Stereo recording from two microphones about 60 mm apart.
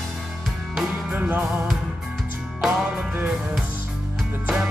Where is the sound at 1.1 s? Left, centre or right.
Right.